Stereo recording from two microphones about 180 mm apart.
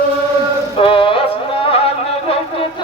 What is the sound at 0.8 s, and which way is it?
Music, 30° left (ahead or behind).